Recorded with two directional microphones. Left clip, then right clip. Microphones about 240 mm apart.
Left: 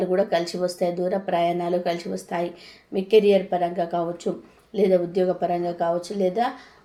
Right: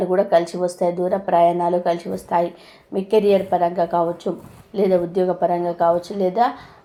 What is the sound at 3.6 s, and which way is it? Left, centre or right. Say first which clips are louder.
A woman's voice: right 6 dB; centre.